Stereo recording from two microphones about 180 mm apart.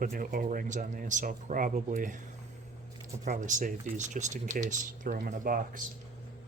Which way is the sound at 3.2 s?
45° right (ahead or behind).